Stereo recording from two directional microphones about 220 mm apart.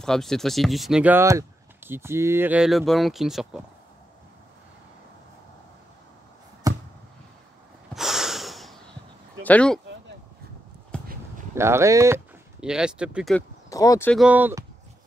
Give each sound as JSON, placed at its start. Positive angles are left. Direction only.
{"t": 0.0, "sound": "speech", "side_deg": 0}
{"t": 6.7, "sound": "a sound", "side_deg": -15}
{"t": 7.9, "sound": "snort", "side_deg": 0}
{"t": 9.4, "sound": "speech", "side_deg": 5}
{"t": 10.9, "sound": "a sound", "side_deg": 5}
{"t": 11.5, "sound": "speech", "side_deg": -10}
{"t": 13.7, "sound": "speech", "side_deg": 15}
{"t": 14.1, "sound": "speech", "side_deg": -5}